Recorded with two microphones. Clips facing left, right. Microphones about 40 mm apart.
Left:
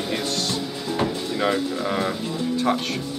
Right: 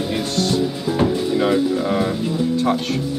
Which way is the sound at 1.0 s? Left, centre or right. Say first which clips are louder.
Right 5 dB; centre.